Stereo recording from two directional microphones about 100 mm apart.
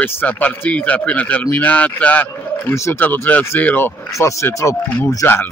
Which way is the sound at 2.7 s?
30° left (ahead or behind).